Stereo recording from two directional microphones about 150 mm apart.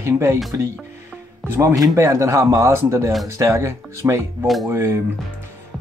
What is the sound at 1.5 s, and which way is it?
Speech, 15° right (ahead or behind).